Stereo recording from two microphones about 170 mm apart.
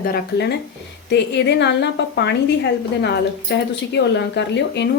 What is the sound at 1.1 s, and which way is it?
Speech, 85° left.